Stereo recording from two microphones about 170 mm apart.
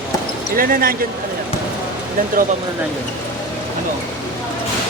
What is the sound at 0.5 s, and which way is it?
Speech, 55° right (ahead or behind).